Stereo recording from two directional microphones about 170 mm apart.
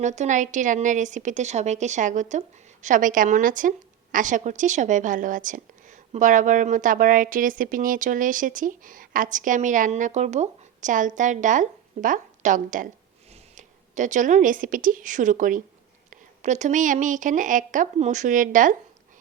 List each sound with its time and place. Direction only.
0.0 s a woman's voice: 45° right (ahead or behind)